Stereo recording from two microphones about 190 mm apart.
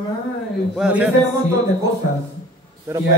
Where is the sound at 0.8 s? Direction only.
5° right (ahead or behind).